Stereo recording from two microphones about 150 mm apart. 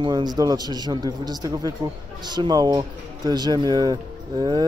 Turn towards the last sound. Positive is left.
turn(degrees=-30)  # may be behind; listen again after turning